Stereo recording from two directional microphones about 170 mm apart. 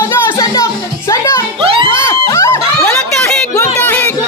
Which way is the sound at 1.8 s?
15° left (ahead or behind).